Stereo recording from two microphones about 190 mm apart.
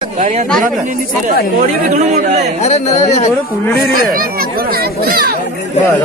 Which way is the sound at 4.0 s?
50° right (ahead or behind).